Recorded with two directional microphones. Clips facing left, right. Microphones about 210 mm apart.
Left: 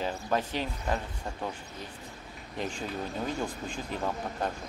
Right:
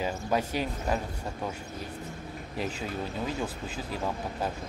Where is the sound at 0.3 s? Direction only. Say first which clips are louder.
Right 2 dB; 10° right (ahead or behind).